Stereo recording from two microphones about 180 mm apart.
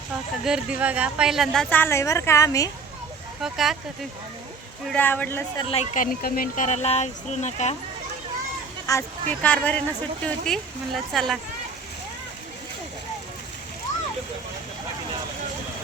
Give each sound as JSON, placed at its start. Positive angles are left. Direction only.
{"t": 0.4, "sound": "speech", "side_deg": -5}
{"t": 1.7, "sound": "a woman's voice", "side_deg": 15}
{"t": 3.4, "sound": "speech", "side_deg": 0}
{"t": 4.9, "sound": "a woman's voice", "side_deg": 10}
{"t": 5.5, "sound": "speech", "side_deg": 35}
{"t": 8.9, "sound": "a woman's voice", "side_deg": 10}